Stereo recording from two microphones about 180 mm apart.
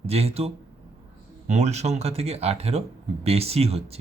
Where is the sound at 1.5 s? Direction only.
35° right (ahead or behind).